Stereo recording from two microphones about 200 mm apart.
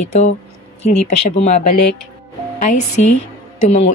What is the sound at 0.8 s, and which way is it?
Speech, 35° left (ahead or behind).